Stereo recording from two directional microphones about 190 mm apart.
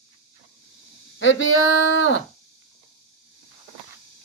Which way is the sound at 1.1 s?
80° left.